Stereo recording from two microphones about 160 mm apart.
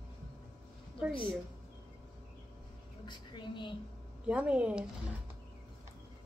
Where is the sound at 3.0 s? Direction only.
30° left (ahead or behind).